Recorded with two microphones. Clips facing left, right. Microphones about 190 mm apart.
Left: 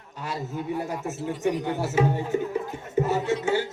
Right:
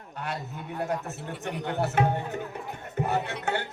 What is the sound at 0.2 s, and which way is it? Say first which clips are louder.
A man's voice: left 4 dB; 60° right (ahead or behind).